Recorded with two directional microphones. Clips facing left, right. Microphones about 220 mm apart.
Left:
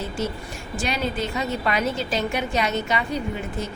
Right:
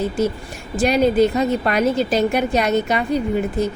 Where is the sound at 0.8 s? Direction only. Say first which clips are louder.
Right 12 dB; 55° right (ahead or behind).